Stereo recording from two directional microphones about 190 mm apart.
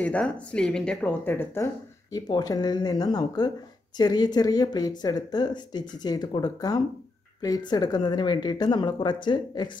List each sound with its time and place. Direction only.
0.0 s speech: 5° left (ahead or behind)
2.1 s speech: 20° left (ahead or behind)